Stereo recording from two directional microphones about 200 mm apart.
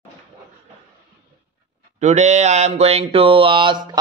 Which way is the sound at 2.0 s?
35° right (ahead or behind).